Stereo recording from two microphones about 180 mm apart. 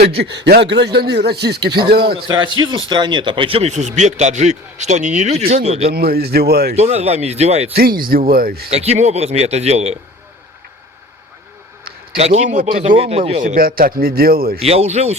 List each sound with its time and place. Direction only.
0.2 s speech: 70° right (ahead or behind)
2.1 s speech: 25° right (ahead or behind)
5.9 s speech: 60° right (ahead or behind)
6.7 s speech: 35° right (ahead or behind)
7.8 s speech: 55° right (ahead or behind)
8.7 s speech: 35° right (ahead or behind)
12.1 s a man's voice: 35° right (ahead or behind); by 13.0 s 50° right (ahead or behind)
13.0 s speech: 35° right (ahead or behind)
13.4 s speech: 50° right (ahead or behind)
14.6 s speech: 35° right (ahead or behind)